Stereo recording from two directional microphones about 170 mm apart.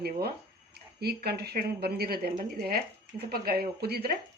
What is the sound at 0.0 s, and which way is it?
Speech, 65° right (ahead or behind).